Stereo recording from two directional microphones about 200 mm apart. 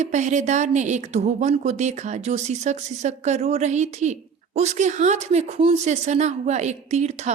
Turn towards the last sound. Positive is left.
turn(degrees=-35)  # may be behind; listen again after turning